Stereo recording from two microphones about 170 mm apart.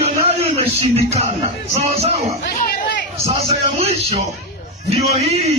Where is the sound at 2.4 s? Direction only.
60° left (ahead or behind).